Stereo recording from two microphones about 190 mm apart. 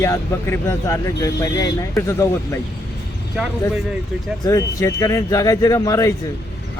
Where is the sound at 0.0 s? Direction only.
15° left (ahead or behind).